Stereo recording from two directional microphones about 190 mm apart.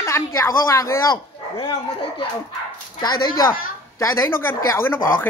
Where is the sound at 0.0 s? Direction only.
15° left (ahead or behind).